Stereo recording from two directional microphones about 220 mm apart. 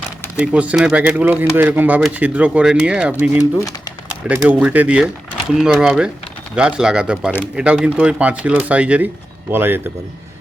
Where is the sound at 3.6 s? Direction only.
15° left (ahead or behind).